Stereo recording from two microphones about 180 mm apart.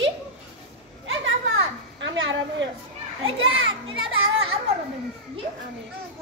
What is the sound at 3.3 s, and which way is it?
Children playing, 90° right.